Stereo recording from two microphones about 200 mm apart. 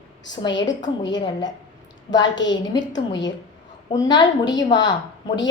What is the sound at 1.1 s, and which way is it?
A woman's voice, 20° left (ahead or behind).